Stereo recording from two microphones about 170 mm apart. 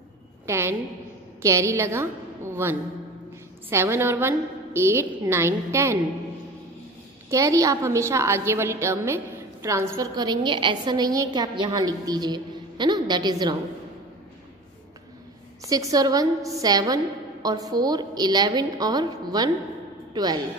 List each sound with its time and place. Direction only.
0.5 s a woman's voice: 15° right (ahead or behind)
7.2 s a woman's voice: 20° right (ahead or behind)
15.6 s a woman's voice: 20° right (ahead or behind)